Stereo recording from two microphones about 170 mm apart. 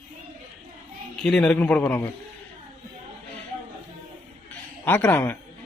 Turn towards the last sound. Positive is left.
turn(degrees=15)  # may be behind; listen again after turning